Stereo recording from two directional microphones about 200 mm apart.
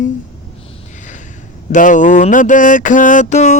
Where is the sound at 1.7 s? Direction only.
40° left (ahead or behind).